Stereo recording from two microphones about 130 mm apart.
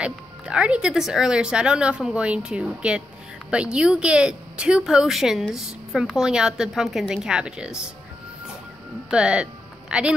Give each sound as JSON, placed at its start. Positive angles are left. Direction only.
{"t": 0.0, "sound": "a woman's voice", "side_deg": -10}
{"t": 9.1, "sound": "speech", "side_deg": -5}